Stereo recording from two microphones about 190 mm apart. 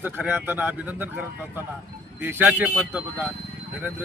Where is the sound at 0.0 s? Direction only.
10° right (ahead or behind).